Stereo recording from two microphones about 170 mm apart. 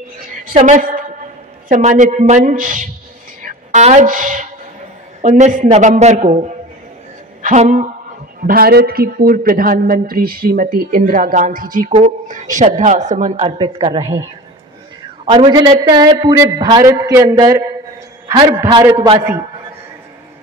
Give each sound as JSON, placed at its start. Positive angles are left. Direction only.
{"t": 0.6, "sound": "speech", "side_deg": -45}
{"t": 7.4, "sound": "speech", "side_deg": -45}
{"t": 8.5, "sound": "speech", "side_deg": -65}
{"t": 15.2, "sound": "a man's voice", "side_deg": -25}